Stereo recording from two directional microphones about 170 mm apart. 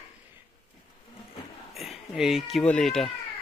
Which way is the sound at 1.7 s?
Centre (ahead or behind).